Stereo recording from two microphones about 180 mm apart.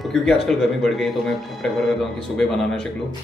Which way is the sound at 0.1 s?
Centre (ahead or behind).